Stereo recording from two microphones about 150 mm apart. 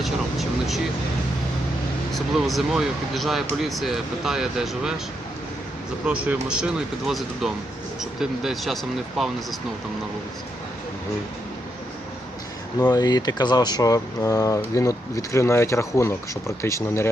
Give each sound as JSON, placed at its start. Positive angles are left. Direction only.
{"t": 0.0, "sound": "air conditioning", "side_deg": 0}
{"t": 2.1, "sound": "speech", "side_deg": 0}
{"t": 6.1, "sound": "speech", "side_deg": -5}
{"t": 12.8, "sound": "speech", "side_deg": 25}